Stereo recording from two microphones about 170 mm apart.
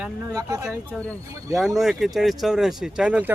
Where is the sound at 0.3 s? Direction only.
20° right (ahead or behind).